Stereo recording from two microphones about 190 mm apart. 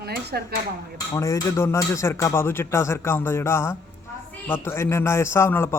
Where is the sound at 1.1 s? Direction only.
15° left (ahead or behind).